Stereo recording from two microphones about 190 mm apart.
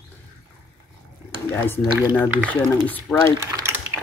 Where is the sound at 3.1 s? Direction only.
5° left (ahead or behind).